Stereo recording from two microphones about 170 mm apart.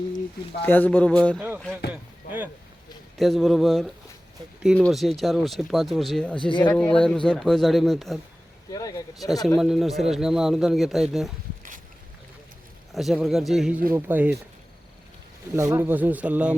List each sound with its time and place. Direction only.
0.6 s speech: 10° left (ahead or behind)
1.9 s a sound: 10° right (ahead or behind)
3.2 s speech: centre (ahead or behind)
6.3 s speech: 30° left (ahead or behind)
6.6 s speech: 10° left (ahead or behind)
8.7 s speech: 20° left (ahead or behind)
9.1 s speech: centre (ahead or behind)
12.9 s speech: centre (ahead or behind)
15.5 s speech: 15° right (ahead or behind)